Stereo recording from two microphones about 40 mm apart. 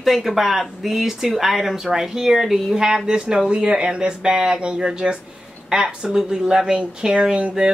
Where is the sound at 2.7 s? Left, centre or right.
Centre.